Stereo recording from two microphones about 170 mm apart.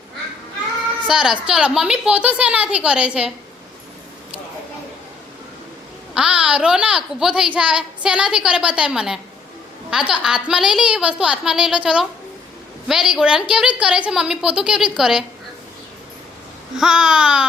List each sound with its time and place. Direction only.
1.0 s a child's voice: 5° right (ahead or behind)
6.1 s a child's voice: 5° right (ahead or behind)
16.7 s a child's voice: 5° right (ahead or behind)